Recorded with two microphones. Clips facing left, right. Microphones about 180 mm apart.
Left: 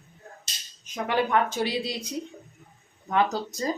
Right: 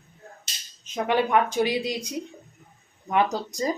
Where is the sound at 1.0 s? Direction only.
15° right (ahead or behind).